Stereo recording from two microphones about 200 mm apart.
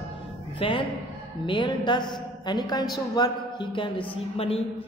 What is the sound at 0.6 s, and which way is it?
A woman's voice, 25° left (ahead or behind).